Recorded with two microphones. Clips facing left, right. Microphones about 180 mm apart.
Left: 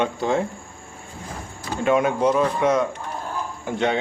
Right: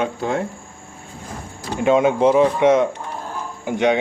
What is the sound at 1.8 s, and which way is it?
A man's voice, 20° right (ahead or behind).